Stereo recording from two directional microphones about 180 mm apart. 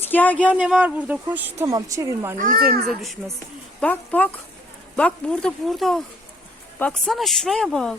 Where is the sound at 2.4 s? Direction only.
55° right (ahead or behind).